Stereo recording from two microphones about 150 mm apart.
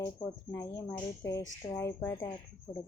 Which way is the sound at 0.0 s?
20° left (ahead or behind).